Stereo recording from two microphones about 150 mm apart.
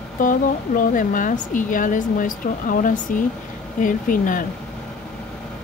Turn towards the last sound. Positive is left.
turn(degrees=65)  # may be behind; listen again after turning